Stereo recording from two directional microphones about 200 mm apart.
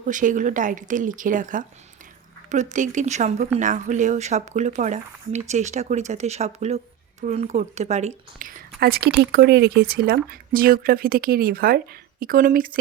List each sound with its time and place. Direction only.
0.0 s speech: 40° right (ahead or behind)
8.8 s speech: 50° right (ahead or behind)